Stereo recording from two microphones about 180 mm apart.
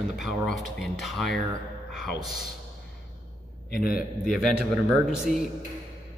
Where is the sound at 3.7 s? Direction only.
55° left (ahead or behind).